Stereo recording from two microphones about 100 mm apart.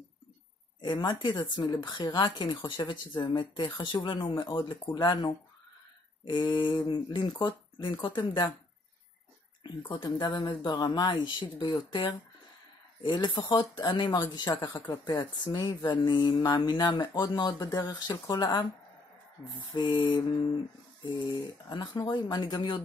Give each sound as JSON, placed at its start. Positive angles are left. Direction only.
{"t": 0.7, "sound": "speech", "side_deg": 50}
{"t": 9.6, "sound": "speech", "side_deg": 55}
{"t": 10.0, "sound": "speech", "side_deg": 45}
{"t": 19.7, "sound": "speech", "side_deg": 45}